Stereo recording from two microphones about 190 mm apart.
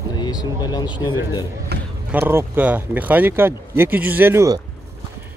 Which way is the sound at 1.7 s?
60° right (ahead or behind).